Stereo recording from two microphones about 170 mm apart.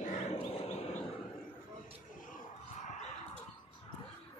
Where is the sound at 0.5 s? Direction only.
40° left (ahead or behind).